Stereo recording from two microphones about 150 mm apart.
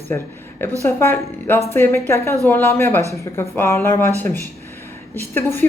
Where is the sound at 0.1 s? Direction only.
15° left (ahead or behind).